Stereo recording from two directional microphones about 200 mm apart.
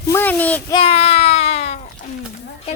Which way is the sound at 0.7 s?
30° left (ahead or behind).